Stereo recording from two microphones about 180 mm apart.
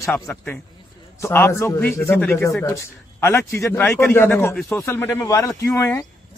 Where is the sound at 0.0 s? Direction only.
10° left (ahead or behind).